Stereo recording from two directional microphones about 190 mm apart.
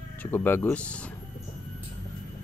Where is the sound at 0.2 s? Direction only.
10° left (ahead or behind).